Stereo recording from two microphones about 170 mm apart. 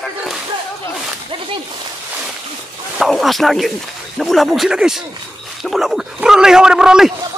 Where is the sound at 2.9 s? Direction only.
Centre (ahead or behind).